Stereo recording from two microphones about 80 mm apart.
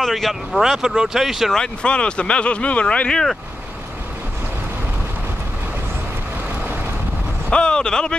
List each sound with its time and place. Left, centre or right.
0.0 s speech: centre
1.6 s speech: centre
7.4 s speech: centre